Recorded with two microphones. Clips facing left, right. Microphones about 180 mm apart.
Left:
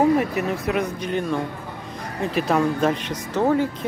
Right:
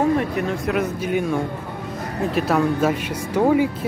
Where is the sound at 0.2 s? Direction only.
5° left (ahead or behind).